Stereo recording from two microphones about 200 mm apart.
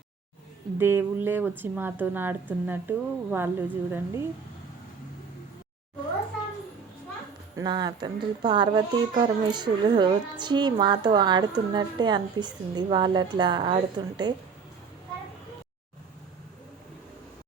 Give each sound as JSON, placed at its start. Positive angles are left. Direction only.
{"t": 0.8, "sound": "a woman's voice", "side_deg": -10}
{"t": 7.5, "sound": "a woman's voice", "side_deg": -20}